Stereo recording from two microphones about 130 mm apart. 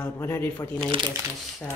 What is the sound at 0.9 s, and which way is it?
Speech, 40° right (ahead or behind).